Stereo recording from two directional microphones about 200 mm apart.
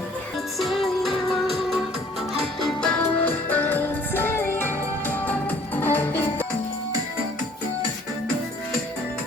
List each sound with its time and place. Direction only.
0.6 s music: centre (ahead or behind)